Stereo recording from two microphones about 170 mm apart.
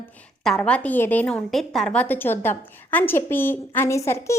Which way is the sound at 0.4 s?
5° left (ahead or behind).